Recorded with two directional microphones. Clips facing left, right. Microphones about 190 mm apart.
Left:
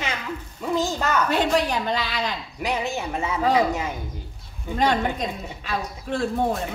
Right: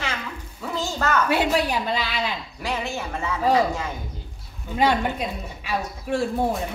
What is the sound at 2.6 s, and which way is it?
Speech, 20° left (ahead or behind).